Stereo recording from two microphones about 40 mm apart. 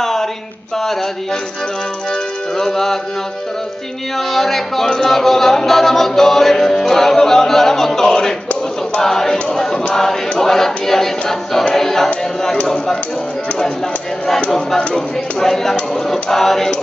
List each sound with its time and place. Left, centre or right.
0.0 s a sound: centre
2.5 s music: centre
4.3 s a capella: centre
12.6 s speech: centre
15.0 s a capella: centre